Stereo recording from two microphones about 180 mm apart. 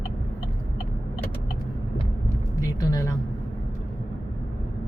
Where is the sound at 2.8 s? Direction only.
20° left (ahead or behind).